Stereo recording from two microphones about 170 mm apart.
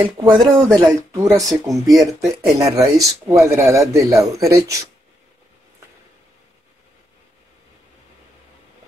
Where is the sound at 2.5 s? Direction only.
20° right (ahead or behind).